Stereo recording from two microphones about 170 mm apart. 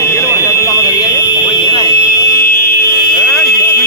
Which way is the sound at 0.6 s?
20° left (ahead or behind).